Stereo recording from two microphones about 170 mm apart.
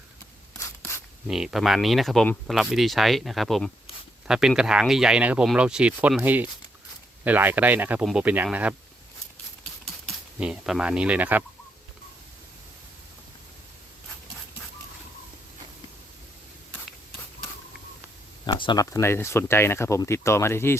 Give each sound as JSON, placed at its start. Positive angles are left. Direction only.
{"t": 1.3, "sound": "speech", "side_deg": 0}
{"t": 10.4, "sound": "speech", "side_deg": -5}
{"t": 18.4, "sound": "speech", "side_deg": 25}